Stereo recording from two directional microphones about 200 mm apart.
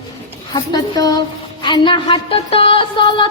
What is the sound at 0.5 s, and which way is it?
A woman's voice, 20° left (ahead or behind).